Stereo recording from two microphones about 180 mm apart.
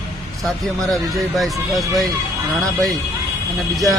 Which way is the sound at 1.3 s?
Centre (ahead or behind).